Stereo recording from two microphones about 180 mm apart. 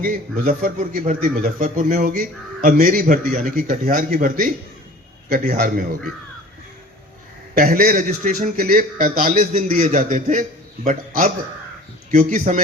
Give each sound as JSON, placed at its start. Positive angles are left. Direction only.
{"t": 0.0, "sound": "a man's voice", "side_deg": -50}
{"t": 7.6, "sound": "a man's voice", "side_deg": -50}